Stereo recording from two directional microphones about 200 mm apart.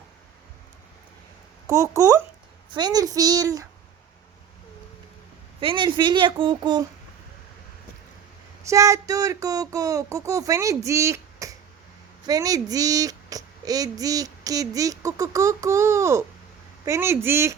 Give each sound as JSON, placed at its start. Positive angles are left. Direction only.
{"t": 1.6, "sound": "a woman's voice", "side_deg": -15}
{"t": 5.5, "sound": "a woman's voice", "side_deg": -25}
{"t": 8.6, "sound": "speech", "side_deg": -15}